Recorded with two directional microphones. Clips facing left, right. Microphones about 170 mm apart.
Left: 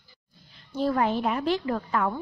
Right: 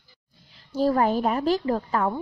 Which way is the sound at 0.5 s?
40° right (ahead or behind).